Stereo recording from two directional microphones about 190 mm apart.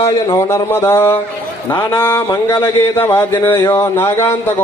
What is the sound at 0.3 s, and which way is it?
Speech, 15° left (ahead or behind).